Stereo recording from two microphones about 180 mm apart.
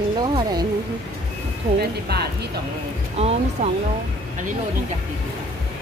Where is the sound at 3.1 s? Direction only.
35° right (ahead or behind).